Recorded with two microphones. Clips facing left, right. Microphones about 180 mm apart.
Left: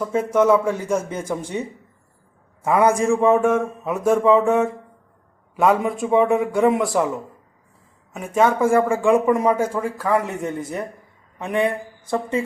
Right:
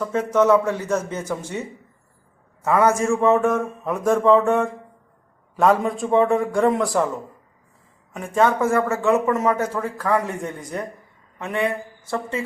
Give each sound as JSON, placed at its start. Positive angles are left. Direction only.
{"t": 0.0, "sound": "speech", "side_deg": 10}
{"t": 2.6, "sound": "speech", "side_deg": 15}
{"t": 8.1, "sound": "speech", "side_deg": 10}